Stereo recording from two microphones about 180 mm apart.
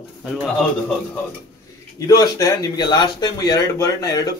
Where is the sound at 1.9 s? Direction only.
20° left (ahead or behind).